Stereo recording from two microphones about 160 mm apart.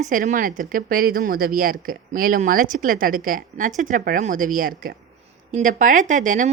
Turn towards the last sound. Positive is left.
turn(degrees=-50)  # may be behind; listen again after turning